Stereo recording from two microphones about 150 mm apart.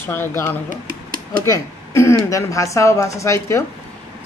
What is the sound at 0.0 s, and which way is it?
Speech, 15° left (ahead or behind).